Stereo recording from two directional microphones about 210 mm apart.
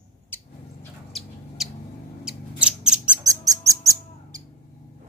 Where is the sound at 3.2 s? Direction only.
15° right (ahead or behind).